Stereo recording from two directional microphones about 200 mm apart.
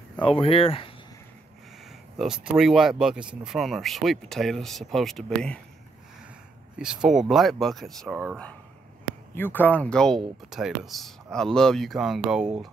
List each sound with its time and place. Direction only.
0.2 s speech: 25° left (ahead or behind)
2.1 s speech: 5° right (ahead or behind)
6.8 s speech: 5° right (ahead or behind)